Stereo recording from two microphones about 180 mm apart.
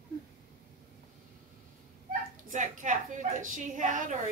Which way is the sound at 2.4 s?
45° right (ahead or behind).